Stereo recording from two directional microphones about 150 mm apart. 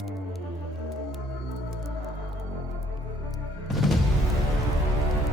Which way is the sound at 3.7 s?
Centre (ahead or behind).